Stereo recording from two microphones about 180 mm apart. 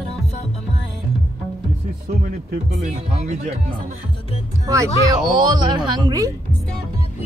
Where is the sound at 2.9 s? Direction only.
40° right (ahead or behind).